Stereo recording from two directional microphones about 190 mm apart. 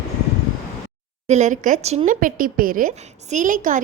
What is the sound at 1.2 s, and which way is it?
A woman's voice, 40° right (ahead or behind).